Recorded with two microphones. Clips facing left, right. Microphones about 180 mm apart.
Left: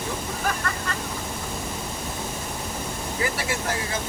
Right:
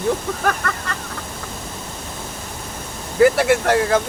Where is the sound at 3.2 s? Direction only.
70° right (ahead or behind).